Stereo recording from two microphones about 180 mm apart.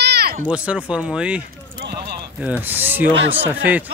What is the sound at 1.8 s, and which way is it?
Clip-clop, 65° right (ahead or behind).